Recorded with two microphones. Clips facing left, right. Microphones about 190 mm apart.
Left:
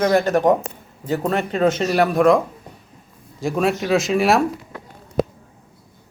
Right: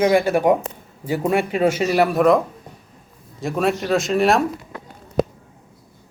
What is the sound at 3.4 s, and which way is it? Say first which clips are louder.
Speech: left 1 dB; centre (ahead or behind).